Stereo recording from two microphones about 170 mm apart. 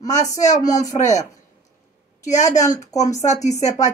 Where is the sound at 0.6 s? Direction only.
20° left (ahead or behind).